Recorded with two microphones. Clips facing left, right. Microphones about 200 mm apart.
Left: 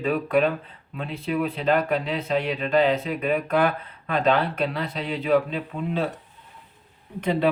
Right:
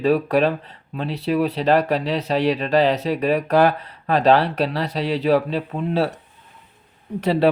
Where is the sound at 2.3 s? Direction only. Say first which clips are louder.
Right 5 dB; 85° right.